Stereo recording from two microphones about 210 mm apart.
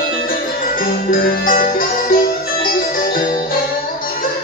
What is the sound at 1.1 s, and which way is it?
Music, 45° left (ahead or behind).